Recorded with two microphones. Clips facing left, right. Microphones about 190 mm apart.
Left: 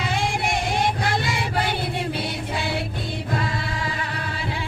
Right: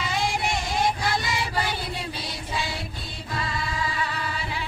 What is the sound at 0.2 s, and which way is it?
Child singing, 60° left (ahead or behind).